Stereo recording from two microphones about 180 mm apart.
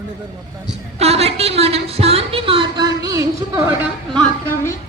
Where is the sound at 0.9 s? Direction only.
35° right (ahead or behind); by 3.6 s 20° right (ahead or behind).